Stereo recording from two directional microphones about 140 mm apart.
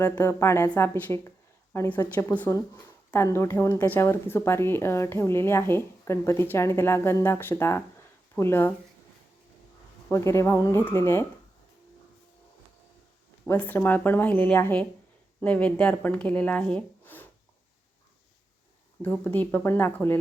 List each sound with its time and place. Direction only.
0.0 s speech: 20° left (ahead or behind)
10.1 s speech: 20° left (ahead or behind)
13.6 s speech: 15° left (ahead or behind)
19.0 s speech: 10° left (ahead or behind)